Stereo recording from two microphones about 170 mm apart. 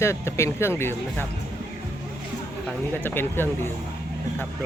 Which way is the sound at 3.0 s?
15° left (ahead or behind).